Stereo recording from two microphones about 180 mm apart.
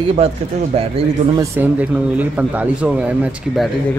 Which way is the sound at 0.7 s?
30° right (ahead or behind).